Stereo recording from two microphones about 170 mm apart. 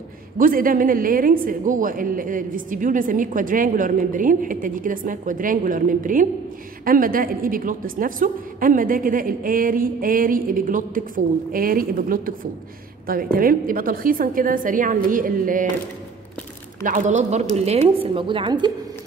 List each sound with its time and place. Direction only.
0.4 s a woman's voice: 55° right (ahead or behind)
16.8 s a woman's voice: 50° right (ahead or behind); by 18.7 s 30° right (ahead or behind)